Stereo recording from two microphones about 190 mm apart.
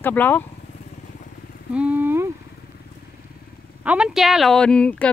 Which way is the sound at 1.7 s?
10° right (ahead or behind).